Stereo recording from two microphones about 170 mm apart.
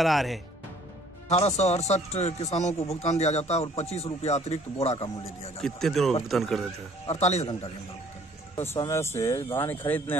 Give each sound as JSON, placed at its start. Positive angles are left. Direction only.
{"t": 0.0, "sound": "speech", "side_deg": 0}
{"t": 1.3, "sound": "speech", "side_deg": 40}
{"t": 5.6, "sound": "speech", "side_deg": 5}
{"t": 7.1, "sound": "speech", "side_deg": 40}
{"t": 8.5, "sound": "speech", "side_deg": 15}